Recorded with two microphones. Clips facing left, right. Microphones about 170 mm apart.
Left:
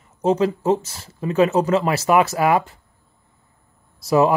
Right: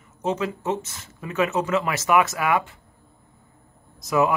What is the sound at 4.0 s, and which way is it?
Speech, 35° left (ahead or behind).